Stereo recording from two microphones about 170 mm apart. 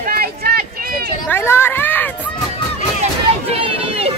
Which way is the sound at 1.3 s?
15° left (ahead or behind).